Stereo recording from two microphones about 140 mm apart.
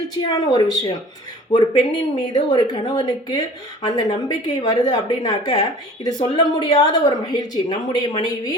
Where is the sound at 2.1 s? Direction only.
30° left (ahead or behind).